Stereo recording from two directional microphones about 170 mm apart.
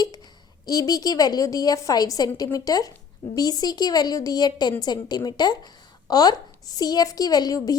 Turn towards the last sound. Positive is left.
turn(degrees=20)  # may be behind; listen again after turning